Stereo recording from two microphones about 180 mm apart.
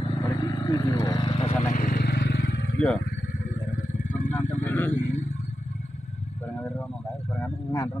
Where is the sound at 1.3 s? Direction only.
35° left (ahead or behind).